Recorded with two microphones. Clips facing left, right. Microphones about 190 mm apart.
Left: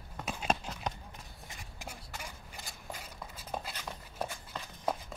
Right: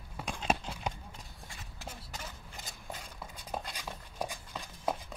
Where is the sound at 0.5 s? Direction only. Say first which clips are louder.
Right 1 dB; 10° right (ahead or behind).